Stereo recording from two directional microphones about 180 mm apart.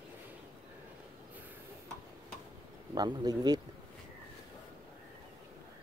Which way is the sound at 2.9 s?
20° right (ahead or behind).